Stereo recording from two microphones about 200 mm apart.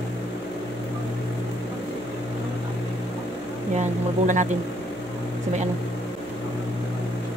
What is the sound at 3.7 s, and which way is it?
Speech, 35° right (ahead or behind).